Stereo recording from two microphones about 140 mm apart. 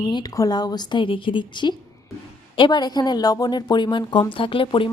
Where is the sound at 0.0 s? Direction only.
25° left (ahead or behind).